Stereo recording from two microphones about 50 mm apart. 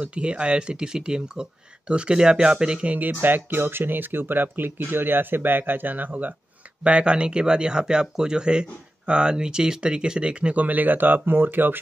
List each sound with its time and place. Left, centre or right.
0.0 s speech: right
2.9 s speech: right
6.8 s speech: right